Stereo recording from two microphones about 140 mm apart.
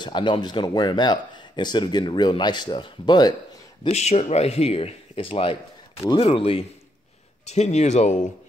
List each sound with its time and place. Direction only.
0.0 s speech: 35° left (ahead or behind)
3.8 s speech: 50° left (ahead or behind)
7.4 s speech: 55° left (ahead or behind)